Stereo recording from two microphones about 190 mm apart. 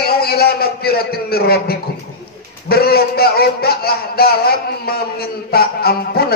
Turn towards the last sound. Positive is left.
turn(degrees=55)  # may be behind; listen again after turning